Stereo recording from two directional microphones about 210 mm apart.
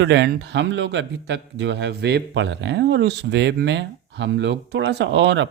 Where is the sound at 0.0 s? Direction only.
55° right (ahead or behind).